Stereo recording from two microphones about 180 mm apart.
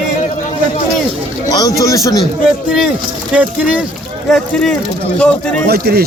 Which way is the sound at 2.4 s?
5° right (ahead or behind).